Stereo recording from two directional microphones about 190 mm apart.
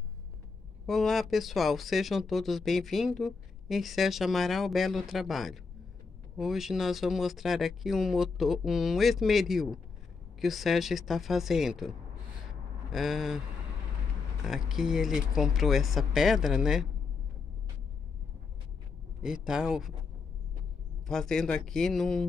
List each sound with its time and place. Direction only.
0.8 s speech: centre (ahead or behind)
12.9 s speech: centre (ahead or behind)
14.4 s speech: centre (ahead or behind)
19.2 s speech: 5° right (ahead or behind)
21.1 s speech: centre (ahead or behind)